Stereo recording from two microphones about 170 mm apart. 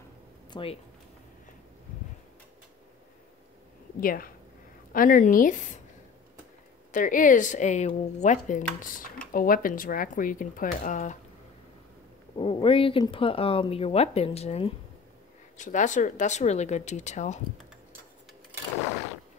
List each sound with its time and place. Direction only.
0.5 s speech: 30° left (ahead or behind)
4.0 s speech: 60° left (ahead or behind)
6.9 s speech: 50° left (ahead or behind)
12.4 s speech: 30° left (ahead or behind)